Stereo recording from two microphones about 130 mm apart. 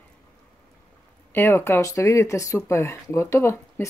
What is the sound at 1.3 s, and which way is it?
Speech, 20° left (ahead or behind).